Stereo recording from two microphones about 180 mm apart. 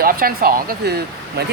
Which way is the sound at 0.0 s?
55° right (ahead or behind).